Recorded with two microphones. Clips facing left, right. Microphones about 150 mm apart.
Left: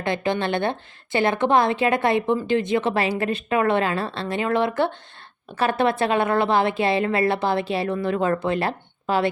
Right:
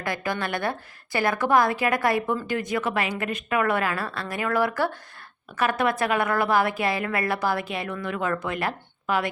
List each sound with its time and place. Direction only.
0.0 s a woman's voice: 25° left (ahead or behind)